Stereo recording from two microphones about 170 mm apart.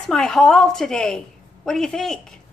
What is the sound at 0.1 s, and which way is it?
A woman's voice, 5° left (ahead or behind).